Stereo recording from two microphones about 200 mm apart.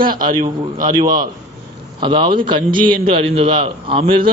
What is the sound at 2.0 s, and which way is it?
A man's voice, 25° right (ahead or behind).